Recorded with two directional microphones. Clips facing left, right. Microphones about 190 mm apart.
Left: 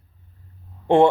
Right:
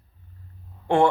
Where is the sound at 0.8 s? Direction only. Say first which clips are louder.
Left 4 dB; 20° left (ahead or behind).